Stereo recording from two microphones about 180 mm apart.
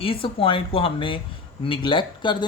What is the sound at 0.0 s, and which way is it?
Speech, 30° left (ahead or behind).